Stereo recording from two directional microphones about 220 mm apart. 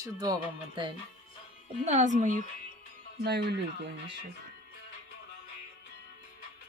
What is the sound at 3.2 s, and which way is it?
Speech, 50° right (ahead or behind).